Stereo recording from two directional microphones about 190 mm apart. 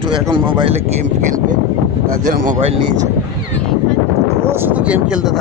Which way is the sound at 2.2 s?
40° right (ahead or behind).